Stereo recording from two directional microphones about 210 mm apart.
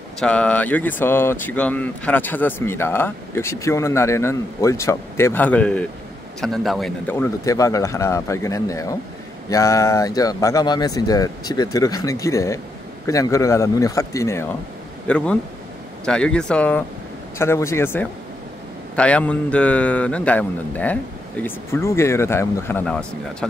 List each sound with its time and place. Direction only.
0.2 s speech: 5° left (ahead or behind)